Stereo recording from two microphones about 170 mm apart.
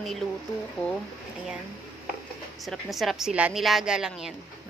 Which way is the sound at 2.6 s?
Centre (ahead or behind).